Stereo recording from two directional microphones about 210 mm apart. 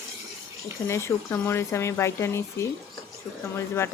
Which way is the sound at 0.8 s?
10° left (ahead or behind).